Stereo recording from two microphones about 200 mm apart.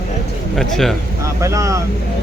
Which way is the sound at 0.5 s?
Centre (ahead or behind).